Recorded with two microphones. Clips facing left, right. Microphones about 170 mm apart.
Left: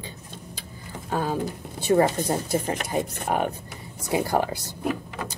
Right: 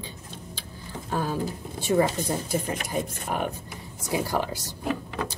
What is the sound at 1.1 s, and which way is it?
Speech, 50° left (ahead or behind).